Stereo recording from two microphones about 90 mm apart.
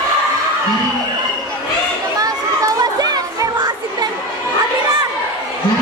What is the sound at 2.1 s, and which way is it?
Chatter, 45° right (ahead or behind).